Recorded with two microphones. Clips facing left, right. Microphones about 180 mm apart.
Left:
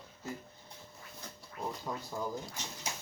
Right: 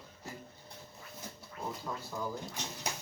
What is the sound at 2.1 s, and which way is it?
Speech, 15° left (ahead or behind).